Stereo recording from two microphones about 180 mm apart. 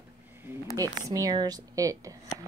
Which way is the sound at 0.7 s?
20° right (ahead or behind).